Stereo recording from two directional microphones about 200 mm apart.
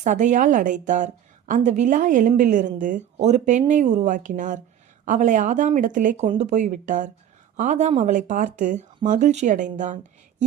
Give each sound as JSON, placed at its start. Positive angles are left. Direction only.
{"t": 0.0, "sound": "a woman's voice", "side_deg": -35}